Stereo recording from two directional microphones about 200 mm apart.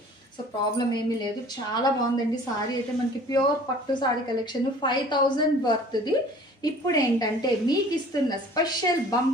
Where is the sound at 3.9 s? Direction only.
25° left (ahead or behind).